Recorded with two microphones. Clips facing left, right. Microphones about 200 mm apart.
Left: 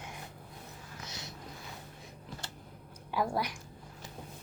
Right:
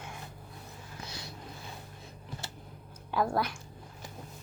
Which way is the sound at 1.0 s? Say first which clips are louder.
Right 2 dB; 20° left (ahead or behind).